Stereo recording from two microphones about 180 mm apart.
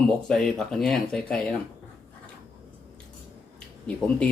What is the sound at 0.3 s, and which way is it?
Speech, 5° left (ahead or behind).